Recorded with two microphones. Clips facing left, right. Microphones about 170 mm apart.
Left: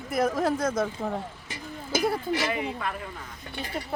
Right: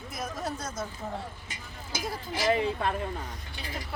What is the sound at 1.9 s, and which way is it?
Speech, 65° left (ahead or behind).